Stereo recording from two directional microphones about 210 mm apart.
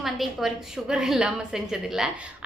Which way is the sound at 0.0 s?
Centre (ahead or behind).